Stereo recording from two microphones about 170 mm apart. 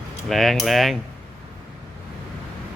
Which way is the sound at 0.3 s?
Centre (ahead or behind).